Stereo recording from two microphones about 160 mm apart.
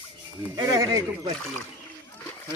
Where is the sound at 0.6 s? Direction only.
20° right (ahead or behind).